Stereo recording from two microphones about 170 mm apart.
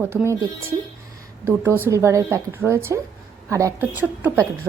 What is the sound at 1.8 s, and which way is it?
A woman's voice, 15° right (ahead or behind).